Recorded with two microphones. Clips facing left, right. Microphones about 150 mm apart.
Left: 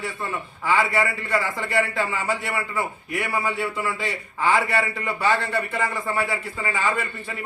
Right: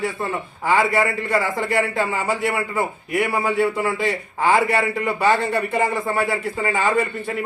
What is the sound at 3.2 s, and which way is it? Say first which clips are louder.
Speech: right 5 dB; 20° right (ahead or behind).